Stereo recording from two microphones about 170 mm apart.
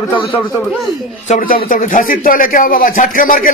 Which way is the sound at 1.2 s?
50° left (ahead or behind).